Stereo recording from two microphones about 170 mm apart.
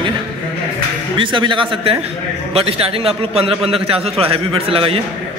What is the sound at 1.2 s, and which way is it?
A man's voice, 30° right (ahead or behind).